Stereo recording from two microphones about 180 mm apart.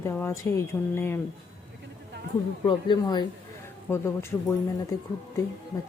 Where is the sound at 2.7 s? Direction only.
25° left (ahead or behind).